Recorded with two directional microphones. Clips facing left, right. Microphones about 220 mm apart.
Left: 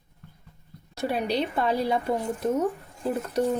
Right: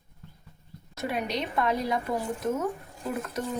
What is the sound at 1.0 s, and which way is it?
A woman's voice, 30° left (ahead or behind).